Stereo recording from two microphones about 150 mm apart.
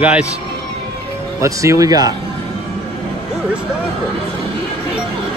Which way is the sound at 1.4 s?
20° right (ahead or behind).